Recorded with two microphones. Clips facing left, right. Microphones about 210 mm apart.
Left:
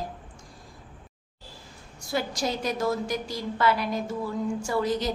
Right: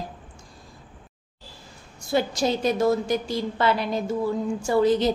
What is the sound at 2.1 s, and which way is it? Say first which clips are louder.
A woman's voice: right 5 dB; 25° right (ahead or behind).